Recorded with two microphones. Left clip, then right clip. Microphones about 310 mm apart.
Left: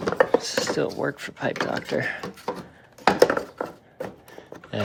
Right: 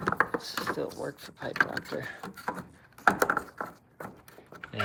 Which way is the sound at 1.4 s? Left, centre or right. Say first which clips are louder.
Left 2 dB; left.